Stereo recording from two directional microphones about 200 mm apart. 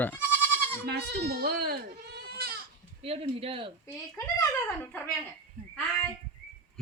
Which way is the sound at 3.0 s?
30° right (ahead or behind).